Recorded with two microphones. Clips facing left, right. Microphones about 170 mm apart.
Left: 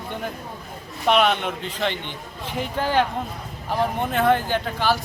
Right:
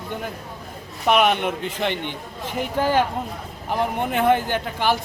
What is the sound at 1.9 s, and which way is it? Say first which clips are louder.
Speech: right 4 dB; 55° right (ahead or behind).